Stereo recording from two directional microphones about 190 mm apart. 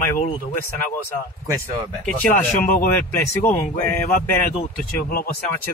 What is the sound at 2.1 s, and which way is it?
Speech, 5° left (ahead or behind).